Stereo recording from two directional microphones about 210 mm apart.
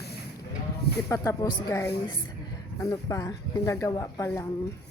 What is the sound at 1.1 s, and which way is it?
Speech, 15° left (ahead or behind).